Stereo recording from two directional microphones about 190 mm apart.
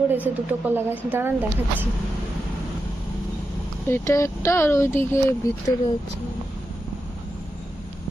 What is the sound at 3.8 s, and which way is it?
Speech, 15° left (ahead or behind).